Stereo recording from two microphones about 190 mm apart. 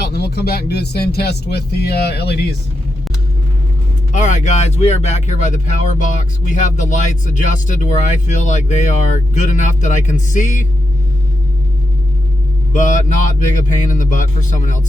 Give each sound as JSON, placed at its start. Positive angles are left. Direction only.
{"t": 0.0, "sound": "speech", "side_deg": 60}
{"t": 4.1, "sound": "speech", "side_deg": 40}
{"t": 12.7, "sound": "speech", "side_deg": 40}